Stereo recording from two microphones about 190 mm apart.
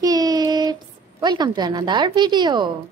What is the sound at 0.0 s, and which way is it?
Child singing, 20° right (ahead or behind).